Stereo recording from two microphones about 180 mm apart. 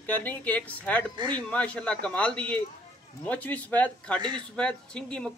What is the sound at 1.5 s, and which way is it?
A man's voice, 5° left (ahead or behind).